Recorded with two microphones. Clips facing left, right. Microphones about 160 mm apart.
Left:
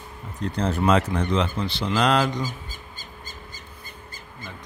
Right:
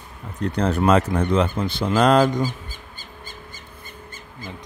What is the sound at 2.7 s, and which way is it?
Crow, 40° left (ahead or behind).